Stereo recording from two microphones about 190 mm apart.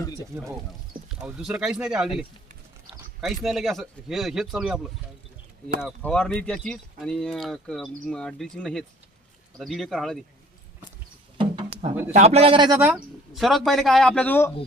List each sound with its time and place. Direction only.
1.0 s speech: 5° right (ahead or behind)
6.0 s speech: 5° left (ahead or behind)
11.3 s music: 30° right (ahead or behind)
12.1 s a man's voice: 35° right (ahead or behind)
12.8 s speech: 5° right (ahead or behind)